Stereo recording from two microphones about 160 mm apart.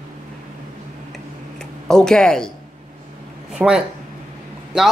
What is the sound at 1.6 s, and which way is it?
Speech, 5° left (ahead or behind).